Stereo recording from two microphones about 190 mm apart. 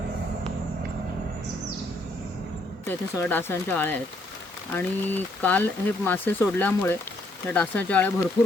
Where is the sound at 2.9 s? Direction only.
10° left (ahead or behind).